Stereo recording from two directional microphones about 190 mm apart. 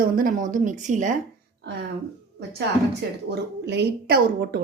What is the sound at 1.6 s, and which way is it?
Speech, 65° right (ahead or behind).